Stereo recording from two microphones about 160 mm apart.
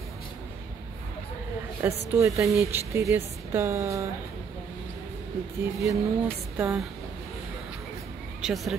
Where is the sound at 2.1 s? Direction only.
20° right (ahead or behind).